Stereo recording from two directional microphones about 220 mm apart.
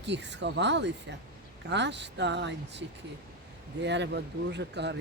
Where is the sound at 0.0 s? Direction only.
55° right (ahead or behind).